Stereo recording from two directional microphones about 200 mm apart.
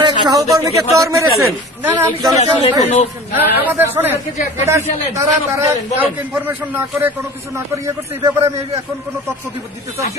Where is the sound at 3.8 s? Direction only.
10° right (ahead or behind).